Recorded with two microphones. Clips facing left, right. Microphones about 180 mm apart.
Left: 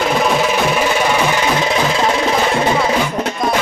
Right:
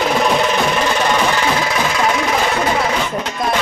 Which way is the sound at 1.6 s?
25° left (ahead or behind).